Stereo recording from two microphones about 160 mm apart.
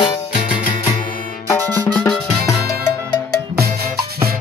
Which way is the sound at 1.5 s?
15° left (ahead or behind).